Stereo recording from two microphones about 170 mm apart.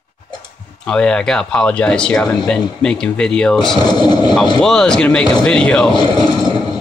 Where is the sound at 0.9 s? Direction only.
5° left (ahead or behind).